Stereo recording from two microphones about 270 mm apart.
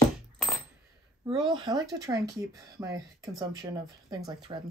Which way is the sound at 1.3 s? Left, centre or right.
Centre.